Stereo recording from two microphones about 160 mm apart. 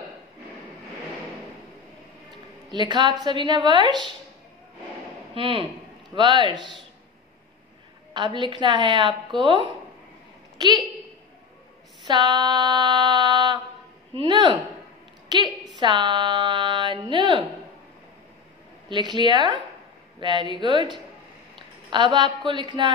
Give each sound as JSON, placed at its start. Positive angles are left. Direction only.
{"t": 2.7, "sound": "a woman's voice", "side_deg": -30}
{"t": 5.3, "sound": "a woman's voice", "side_deg": -35}
{"t": 8.4, "sound": "a woman's voice", "side_deg": -30}
{"t": 12.1, "sound": "a sound", "side_deg": -25}
{"t": 14.1, "sound": "a woman's voice", "side_deg": -30}
{"t": 18.9, "sound": "a woman's voice", "side_deg": -30}